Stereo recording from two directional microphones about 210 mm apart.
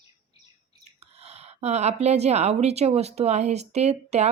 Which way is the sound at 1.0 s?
30° right (ahead or behind).